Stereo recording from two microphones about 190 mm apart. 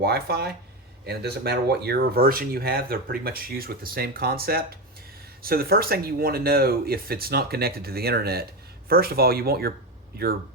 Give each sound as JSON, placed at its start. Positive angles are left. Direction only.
{"t": 0.0, "sound": "speech", "side_deg": -55}